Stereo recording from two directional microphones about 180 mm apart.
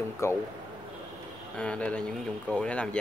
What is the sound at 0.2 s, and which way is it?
Speech, 15° left (ahead or behind).